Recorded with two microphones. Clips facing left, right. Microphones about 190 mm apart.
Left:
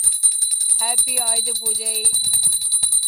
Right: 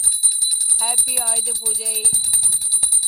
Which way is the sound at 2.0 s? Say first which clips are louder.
Even; 45° right (ahead or behind).